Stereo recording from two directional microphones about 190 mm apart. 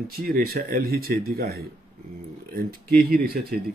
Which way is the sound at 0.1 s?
50° right (ahead or behind).